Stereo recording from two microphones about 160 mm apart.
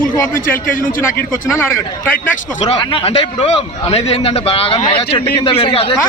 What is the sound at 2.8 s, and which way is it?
A man's voice, 30° left (ahead or behind).